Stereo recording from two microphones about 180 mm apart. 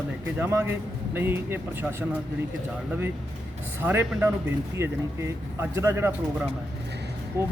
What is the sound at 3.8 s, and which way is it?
Speech, 10° right (ahead or behind).